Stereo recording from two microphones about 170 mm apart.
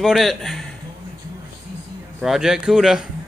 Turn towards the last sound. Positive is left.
turn(degrees=-5)  # may be behind; listen again after turning